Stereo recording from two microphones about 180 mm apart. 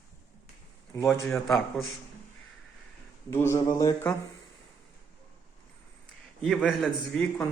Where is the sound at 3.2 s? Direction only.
15° left (ahead or behind).